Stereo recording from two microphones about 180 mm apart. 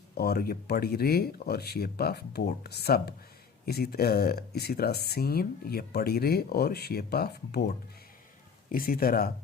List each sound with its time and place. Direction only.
0.2 s speech: 60° left (ahead or behind)
8.7 s speech: 55° left (ahead or behind)